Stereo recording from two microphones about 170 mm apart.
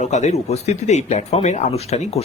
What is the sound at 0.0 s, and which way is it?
Speech, 45° left (ahead or behind).